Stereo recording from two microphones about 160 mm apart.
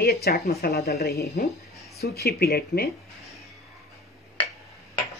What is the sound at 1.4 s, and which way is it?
Speech, 70° left (ahead or behind).